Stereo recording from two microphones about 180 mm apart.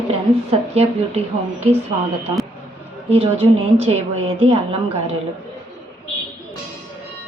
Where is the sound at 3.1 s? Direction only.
35° right (ahead or behind).